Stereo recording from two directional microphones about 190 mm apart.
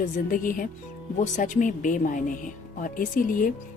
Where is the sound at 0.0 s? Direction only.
45° left (ahead or behind).